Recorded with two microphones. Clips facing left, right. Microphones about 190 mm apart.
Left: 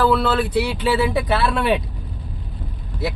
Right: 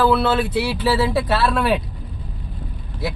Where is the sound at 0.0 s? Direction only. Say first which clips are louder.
Right 1 dB; 10° right (ahead or behind).